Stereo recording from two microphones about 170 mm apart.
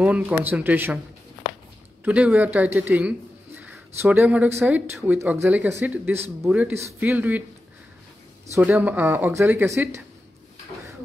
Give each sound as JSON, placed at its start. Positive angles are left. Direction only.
{"t": 0.0, "sound": "speech", "side_deg": -10}
{"t": 2.0, "sound": "speech", "side_deg": -5}
{"t": 8.5, "sound": "speech", "side_deg": -10}